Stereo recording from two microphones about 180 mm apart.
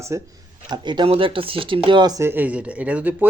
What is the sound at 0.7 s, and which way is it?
Speech, 25° right (ahead or behind).